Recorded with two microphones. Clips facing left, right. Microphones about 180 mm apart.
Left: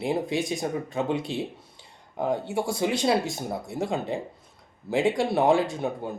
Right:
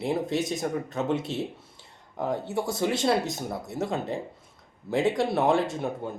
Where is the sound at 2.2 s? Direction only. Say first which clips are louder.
Left 2 dB; 25° left (ahead or behind).